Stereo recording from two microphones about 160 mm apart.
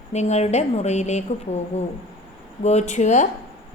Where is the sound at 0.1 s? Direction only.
45° left (ahead or behind).